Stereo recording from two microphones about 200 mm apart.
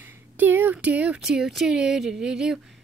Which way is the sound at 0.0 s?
10° right (ahead or behind).